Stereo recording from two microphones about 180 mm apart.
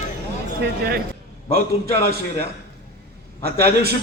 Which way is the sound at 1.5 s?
60° right (ahead or behind).